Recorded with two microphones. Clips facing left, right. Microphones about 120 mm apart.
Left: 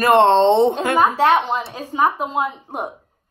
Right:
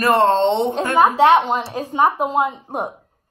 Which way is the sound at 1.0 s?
15° right (ahead or behind).